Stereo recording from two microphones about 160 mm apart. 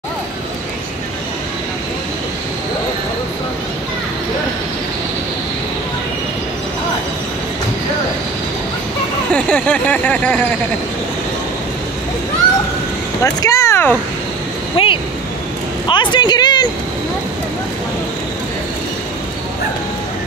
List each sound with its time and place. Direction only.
9.3 s speech: 5° left (ahead or behind)
13.2 s vehicle: 20° left (ahead or behind)
14.8 s a sound: 35° left (ahead or behind)
15.9 s vehicle: 30° left (ahead or behind)